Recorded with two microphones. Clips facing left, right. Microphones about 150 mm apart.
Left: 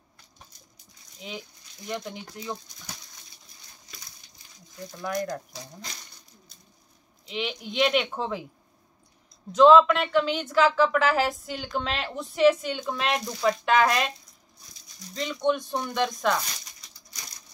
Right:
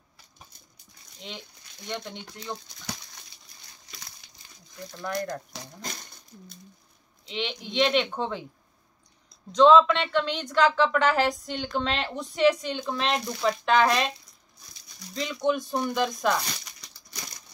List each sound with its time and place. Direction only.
1.3 s a woman's voice: 5° left (ahead or behind)
3.9 s a sound: 65° right (ahead or behind)
5.0 s speech: 5° left (ahead or behind)
7.2 s a woman's voice: centre (ahead or behind)
9.5 s a woman's voice: 5° left (ahead or behind)
15.1 s a woman's voice: centre (ahead or behind)